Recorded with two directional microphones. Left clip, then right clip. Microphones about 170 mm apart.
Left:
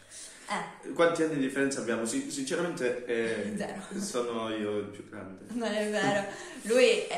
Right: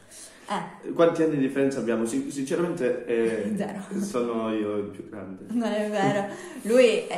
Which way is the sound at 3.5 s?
40° right (ahead or behind).